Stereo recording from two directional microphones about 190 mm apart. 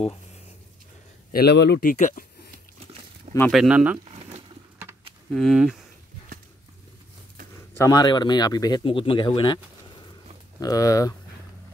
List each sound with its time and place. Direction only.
1.3 s speech: 60° left (ahead or behind); by 2.2 s 40° left (ahead or behind)
3.5 s speech: 5° right (ahead or behind)
4.1 s a sound: 35° right (ahead or behind)
5.3 s speech: centre (ahead or behind)
7.7 s speech: 15° left (ahead or behind)
10.6 s speech: 20° left (ahead or behind)